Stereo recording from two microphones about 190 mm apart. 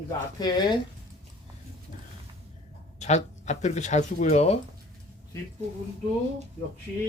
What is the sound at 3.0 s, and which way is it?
Speech, 35° left (ahead or behind).